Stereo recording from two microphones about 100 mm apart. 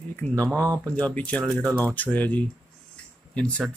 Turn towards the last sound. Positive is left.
turn(degrees=10)  # may be behind; listen again after turning